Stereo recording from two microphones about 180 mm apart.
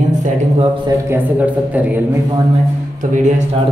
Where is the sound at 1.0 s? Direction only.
10° right (ahead or behind).